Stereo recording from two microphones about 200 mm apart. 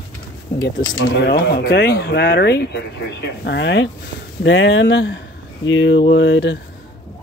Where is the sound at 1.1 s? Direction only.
55° left (ahead or behind).